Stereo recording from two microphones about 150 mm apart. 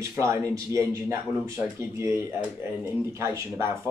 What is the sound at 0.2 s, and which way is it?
Speech, 20° right (ahead or behind).